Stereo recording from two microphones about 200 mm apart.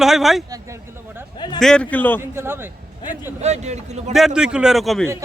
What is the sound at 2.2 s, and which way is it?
Speech, 10° right (ahead or behind).